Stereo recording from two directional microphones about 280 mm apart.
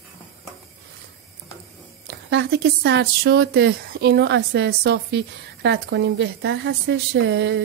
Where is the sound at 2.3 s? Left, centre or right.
Right.